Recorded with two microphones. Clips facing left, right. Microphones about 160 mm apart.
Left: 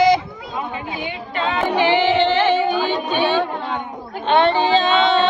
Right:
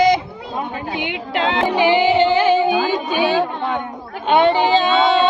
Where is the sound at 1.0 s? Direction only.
90° right.